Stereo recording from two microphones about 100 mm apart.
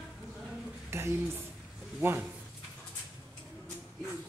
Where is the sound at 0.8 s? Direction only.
25° right (ahead or behind).